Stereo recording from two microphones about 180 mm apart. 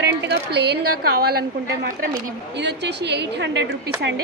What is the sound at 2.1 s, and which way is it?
A woman's voice, 75° right (ahead or behind).